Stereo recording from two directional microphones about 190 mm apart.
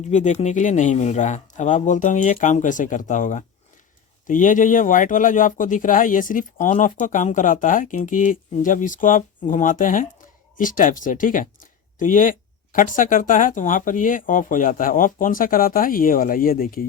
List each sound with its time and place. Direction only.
0.0 s speech: 40° left (ahead or behind)